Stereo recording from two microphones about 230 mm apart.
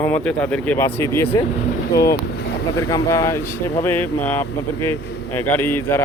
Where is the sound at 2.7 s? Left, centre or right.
Centre.